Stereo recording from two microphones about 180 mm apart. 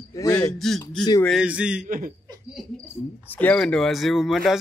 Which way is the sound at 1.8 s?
50° right (ahead or behind).